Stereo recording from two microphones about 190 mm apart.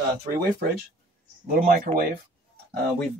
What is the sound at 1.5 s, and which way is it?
Speech, 50° right (ahead or behind).